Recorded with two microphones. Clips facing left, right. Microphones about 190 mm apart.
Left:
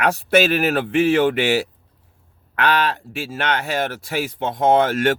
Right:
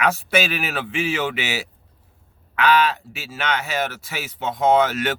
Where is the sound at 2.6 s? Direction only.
55° left (ahead or behind).